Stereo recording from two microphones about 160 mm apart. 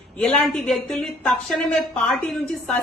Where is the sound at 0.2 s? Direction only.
5° left (ahead or behind).